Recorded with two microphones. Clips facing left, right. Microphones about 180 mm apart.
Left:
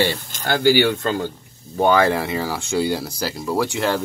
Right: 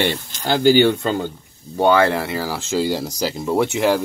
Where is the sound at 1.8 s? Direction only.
15° left (ahead or behind).